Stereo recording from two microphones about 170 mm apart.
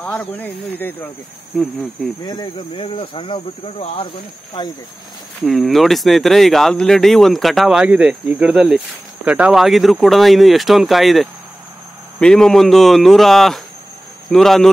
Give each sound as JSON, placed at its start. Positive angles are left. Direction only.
{"t": 0.0, "sound": "speech", "side_deg": 10}
{"t": 1.5, "sound": "speech", "side_deg": 0}
{"t": 2.2, "sound": "speech", "side_deg": 25}
{"t": 5.4, "sound": "speech", "side_deg": 0}